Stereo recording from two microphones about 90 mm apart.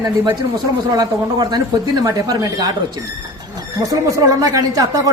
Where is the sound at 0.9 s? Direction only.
50° right (ahead or behind).